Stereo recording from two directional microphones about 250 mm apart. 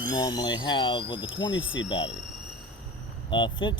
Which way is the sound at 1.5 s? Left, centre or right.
Left.